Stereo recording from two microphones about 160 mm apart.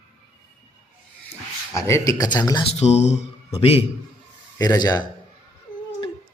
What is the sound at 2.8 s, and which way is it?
A man's voice, 45° left (ahead or behind).